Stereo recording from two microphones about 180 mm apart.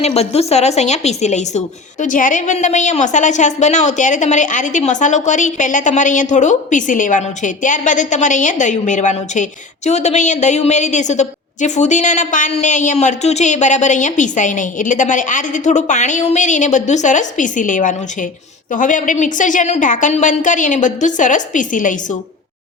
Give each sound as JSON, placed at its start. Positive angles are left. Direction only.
{"t": 0.0, "sound": "a woman's voice", "side_deg": 35}